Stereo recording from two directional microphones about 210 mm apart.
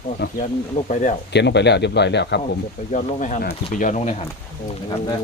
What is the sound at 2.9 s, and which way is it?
Speech, 35° left (ahead or behind).